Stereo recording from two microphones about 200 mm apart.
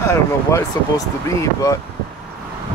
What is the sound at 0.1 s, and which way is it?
Speech, 15° left (ahead or behind).